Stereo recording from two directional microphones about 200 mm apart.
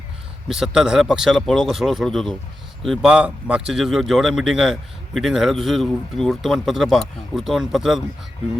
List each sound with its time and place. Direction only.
0.4 s speech: 5° right (ahead or behind)